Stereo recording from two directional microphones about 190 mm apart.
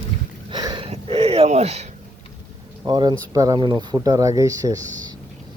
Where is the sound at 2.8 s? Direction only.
20° right (ahead or behind).